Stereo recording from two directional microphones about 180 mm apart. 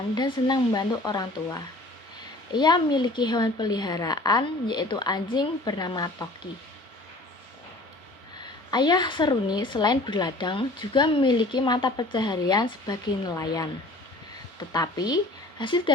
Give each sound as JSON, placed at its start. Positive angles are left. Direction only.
{"t": 0.2, "sound": "speech", "side_deg": 25}
{"t": 8.7, "sound": "speech", "side_deg": 25}
{"t": 14.7, "sound": "speech", "side_deg": 20}